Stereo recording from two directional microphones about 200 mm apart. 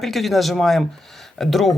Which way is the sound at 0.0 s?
Centre (ahead or behind).